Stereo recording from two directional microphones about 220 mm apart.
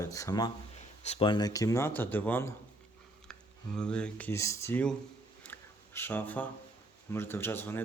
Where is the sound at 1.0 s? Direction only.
25° left (ahead or behind); by 2.5 s 10° left (ahead or behind).